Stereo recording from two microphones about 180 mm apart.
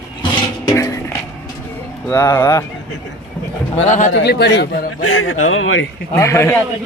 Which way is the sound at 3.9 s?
45° left (ahead or behind).